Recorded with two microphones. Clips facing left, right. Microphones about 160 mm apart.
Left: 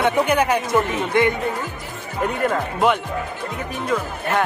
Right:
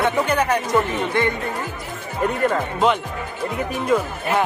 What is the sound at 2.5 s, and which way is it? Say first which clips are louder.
Speech: even; 5° left (ahead or behind).